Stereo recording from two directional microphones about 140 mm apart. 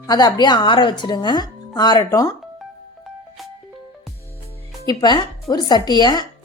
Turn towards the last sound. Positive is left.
turn(degrees=30)  # may be behind; listen again after turning